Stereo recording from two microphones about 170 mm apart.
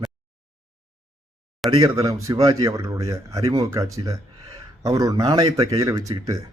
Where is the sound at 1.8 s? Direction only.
20° right (ahead or behind).